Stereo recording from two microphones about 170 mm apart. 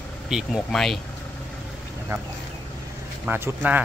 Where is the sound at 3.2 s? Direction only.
10° right (ahead or behind).